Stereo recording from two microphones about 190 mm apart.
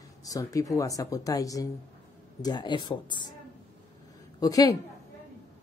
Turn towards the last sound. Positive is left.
turn(degrees=20)  # may be behind; listen again after turning